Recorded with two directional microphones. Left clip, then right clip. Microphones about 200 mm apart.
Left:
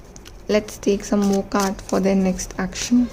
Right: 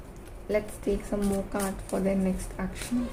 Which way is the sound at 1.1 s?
55° left (ahead or behind).